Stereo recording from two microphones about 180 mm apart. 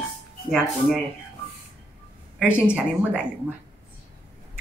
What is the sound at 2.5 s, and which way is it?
Speech, 5° right (ahead or behind).